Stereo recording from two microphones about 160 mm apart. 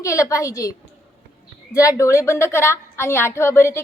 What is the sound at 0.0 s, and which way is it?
A woman's voice, 20° left (ahead or behind).